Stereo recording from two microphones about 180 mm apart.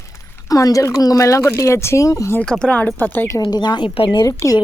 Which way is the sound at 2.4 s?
5° left (ahead or behind).